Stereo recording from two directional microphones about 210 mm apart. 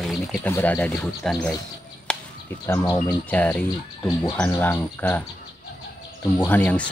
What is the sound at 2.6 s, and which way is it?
Speech, 15° left (ahead or behind).